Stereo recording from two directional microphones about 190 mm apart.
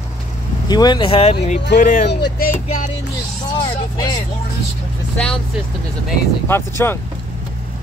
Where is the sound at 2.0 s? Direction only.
60° left (ahead or behind).